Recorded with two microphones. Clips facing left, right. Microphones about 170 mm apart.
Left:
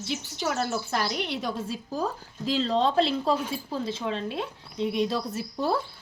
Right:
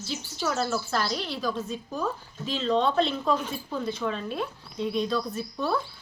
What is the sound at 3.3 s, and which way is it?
A woman's voice, 35° left (ahead or behind).